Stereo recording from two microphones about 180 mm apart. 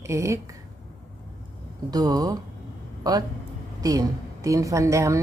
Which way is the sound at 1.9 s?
20° right (ahead or behind).